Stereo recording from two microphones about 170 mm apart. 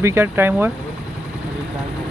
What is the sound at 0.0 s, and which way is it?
Speech, 15° right (ahead or behind).